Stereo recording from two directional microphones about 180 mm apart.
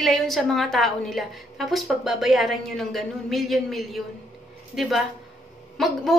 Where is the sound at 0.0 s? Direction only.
Centre (ahead or behind).